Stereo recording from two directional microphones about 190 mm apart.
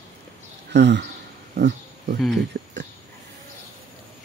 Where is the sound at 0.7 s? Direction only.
65° right (ahead or behind).